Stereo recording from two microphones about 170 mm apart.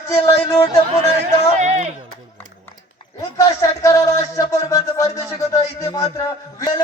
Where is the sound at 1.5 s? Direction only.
40° right (ahead or behind).